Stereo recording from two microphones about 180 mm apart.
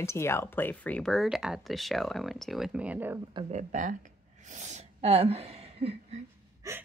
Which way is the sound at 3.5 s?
45° right (ahead or behind).